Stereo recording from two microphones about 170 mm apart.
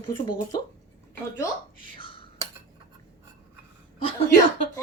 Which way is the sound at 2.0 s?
30° left (ahead or behind).